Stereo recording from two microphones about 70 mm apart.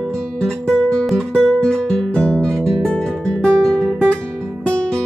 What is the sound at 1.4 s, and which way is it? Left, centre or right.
Music, centre.